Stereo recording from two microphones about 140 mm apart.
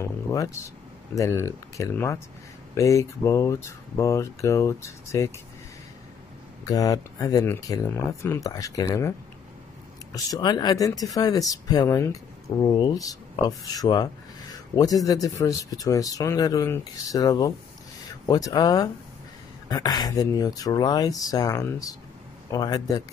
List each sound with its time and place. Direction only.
0.0 s vehicle: 25° left (ahead or behind)
1.1 s speech: 20° left (ahead or behind)
6.7 s speech: 25° left (ahead or behind)
10.1 s speech: 30° left (ahead or behind)